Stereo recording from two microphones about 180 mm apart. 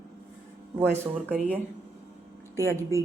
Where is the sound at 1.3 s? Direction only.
5° right (ahead or behind).